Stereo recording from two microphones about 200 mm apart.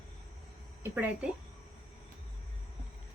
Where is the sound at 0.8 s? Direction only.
10° right (ahead or behind).